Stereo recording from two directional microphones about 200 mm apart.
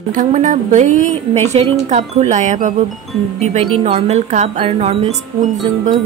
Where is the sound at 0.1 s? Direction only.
40° right (ahead or behind).